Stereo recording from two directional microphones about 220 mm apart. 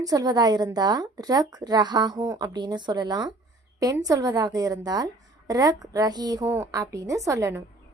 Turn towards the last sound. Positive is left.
turn(degrees=-15)  # may be behind; listen again after turning